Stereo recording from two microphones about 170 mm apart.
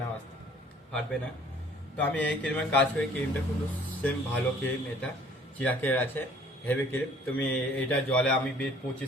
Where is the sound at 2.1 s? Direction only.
10° left (ahead or behind).